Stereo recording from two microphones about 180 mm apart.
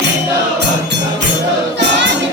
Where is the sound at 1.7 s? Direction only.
80° right.